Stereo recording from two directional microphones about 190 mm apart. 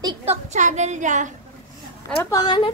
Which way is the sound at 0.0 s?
30° right (ahead or behind).